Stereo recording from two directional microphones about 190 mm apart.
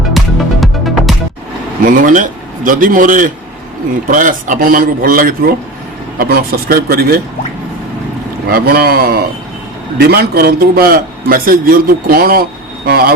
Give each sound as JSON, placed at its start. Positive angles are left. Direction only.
{"t": 0.2, "sound": "music", "side_deg": 0}
{"t": 1.8, "sound": "a man's voice", "side_deg": -45}
{"t": 8.4, "sound": "a man's voice", "side_deg": -50}